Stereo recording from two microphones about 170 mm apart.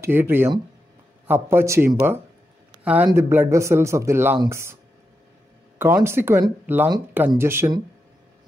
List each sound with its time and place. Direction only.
0.0 s speech: 15° right (ahead or behind)
5.8 s speech: 15° right (ahead or behind)